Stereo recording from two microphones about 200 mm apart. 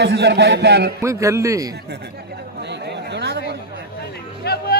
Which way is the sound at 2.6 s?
60° right (ahead or behind).